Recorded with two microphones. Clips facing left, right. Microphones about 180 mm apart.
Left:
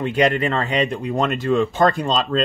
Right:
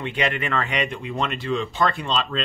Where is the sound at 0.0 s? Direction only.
40° left (ahead or behind).